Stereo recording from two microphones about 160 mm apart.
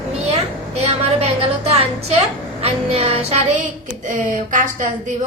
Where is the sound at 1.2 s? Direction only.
40° right (ahead or behind).